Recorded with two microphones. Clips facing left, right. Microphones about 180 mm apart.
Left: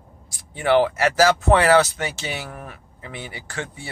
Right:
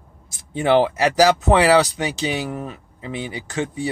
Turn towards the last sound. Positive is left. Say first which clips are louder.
# right 8 dB
turn(degrees=-20)  # may be behind; listen again after turning